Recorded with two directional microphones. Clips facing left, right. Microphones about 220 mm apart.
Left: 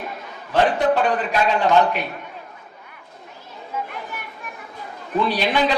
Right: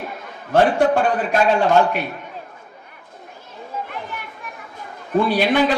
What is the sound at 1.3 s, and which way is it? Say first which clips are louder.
Speech: right 4 dB; 50° right (ahead or behind).